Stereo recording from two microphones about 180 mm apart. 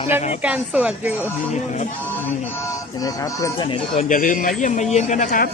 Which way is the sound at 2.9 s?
20° left (ahead or behind).